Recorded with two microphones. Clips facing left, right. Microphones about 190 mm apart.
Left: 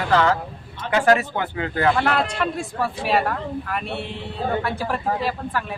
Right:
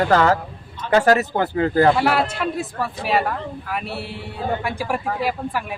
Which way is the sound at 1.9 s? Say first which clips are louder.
Right 2 dB; 5° right (ahead or behind).